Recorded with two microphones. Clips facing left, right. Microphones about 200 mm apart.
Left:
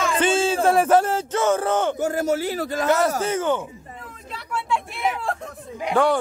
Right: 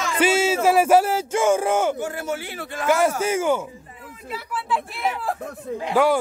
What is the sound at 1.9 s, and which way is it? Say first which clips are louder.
Speech: left 5 dB; 40° left (ahead or behind).